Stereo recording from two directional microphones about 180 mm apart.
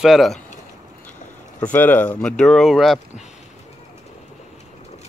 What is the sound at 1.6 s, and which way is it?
Speech, 10° left (ahead or behind).